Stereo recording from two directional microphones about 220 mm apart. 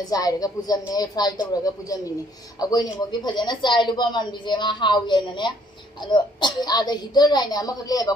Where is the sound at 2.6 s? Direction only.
20° left (ahead or behind).